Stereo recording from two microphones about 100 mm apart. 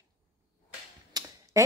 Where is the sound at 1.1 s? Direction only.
40° right (ahead or behind).